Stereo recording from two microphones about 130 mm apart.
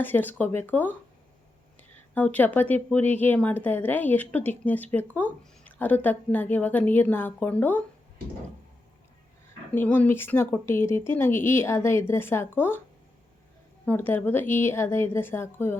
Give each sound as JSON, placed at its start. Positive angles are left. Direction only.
{"t": 0.0, "sound": "a woman's voice", "side_deg": 15}
{"t": 2.1, "sound": "a woman's voice", "side_deg": 15}
{"t": 9.7, "sound": "a woman's voice", "side_deg": 15}
{"t": 13.8, "sound": "a woman's voice", "side_deg": 15}